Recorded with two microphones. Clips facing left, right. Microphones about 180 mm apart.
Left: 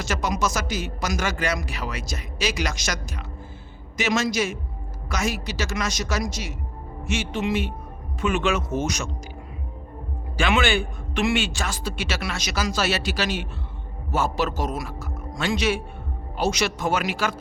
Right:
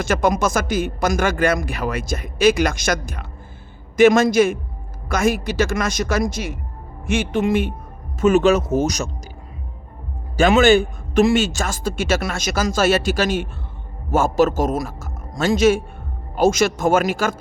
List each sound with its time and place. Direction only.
0.0 s speech: 55° right (ahead or behind)
8.2 s speech: 40° right (ahead or behind)
10.3 s a man's voice: 45° right (ahead or behind)